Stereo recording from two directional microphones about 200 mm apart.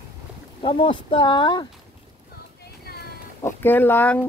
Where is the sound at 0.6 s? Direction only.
25° left (ahead or behind).